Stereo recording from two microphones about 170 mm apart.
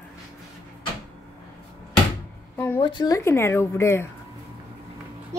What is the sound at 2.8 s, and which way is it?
Speech, 25° left (ahead or behind).